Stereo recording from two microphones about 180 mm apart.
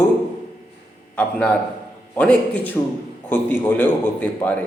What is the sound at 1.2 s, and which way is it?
Speech, 10° left (ahead or behind).